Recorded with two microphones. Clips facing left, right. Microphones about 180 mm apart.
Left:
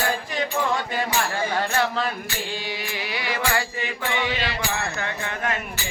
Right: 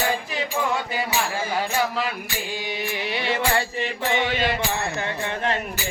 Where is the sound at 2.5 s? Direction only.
20° right (ahead or behind).